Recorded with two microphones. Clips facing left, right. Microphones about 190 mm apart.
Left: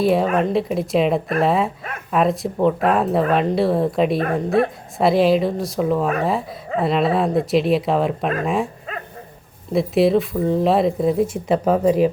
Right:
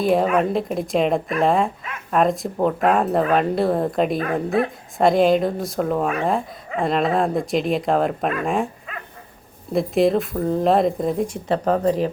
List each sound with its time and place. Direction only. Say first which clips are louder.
0.0 s speech: left 1 dB; centre (ahead or behind)
4.2 s speech: left 2 dB; 35° left (ahead or behind)
4.9 s speech: even; centre (ahead or behind)
9.7 s speech: left 2 dB; centre (ahead or behind)